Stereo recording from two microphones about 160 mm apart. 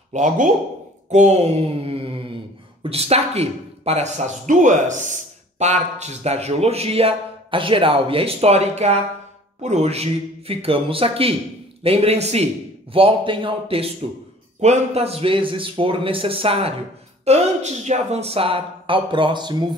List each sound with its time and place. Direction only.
0.1 s speech: 50° right (ahead or behind)
1.1 s mantra: 45° right (ahead or behind)
2.8 s speech: 40° right (ahead or behind)